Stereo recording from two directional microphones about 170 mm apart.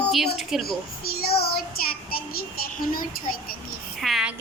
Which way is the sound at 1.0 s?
65° left (ahead or behind).